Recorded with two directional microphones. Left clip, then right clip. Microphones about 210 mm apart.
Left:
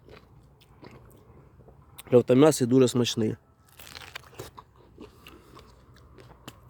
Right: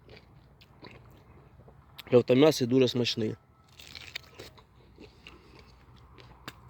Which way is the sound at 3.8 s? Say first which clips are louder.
Even; 35° left (ahead or behind).